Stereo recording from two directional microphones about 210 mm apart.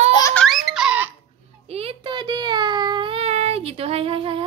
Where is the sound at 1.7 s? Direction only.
30° right (ahead or behind).